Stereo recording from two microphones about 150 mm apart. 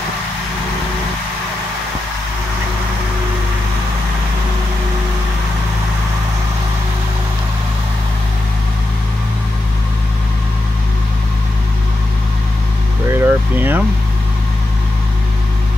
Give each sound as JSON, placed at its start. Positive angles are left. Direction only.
{"t": 13.1, "sound": "vehicle", "side_deg": -15}